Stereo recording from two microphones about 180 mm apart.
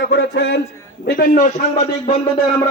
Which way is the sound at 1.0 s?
60° left (ahead or behind).